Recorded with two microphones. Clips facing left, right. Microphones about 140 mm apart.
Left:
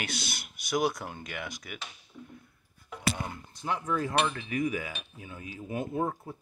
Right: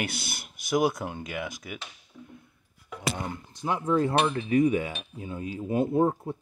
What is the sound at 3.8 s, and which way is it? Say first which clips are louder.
Cutlery: right 5 dB; 30° right (ahead or behind).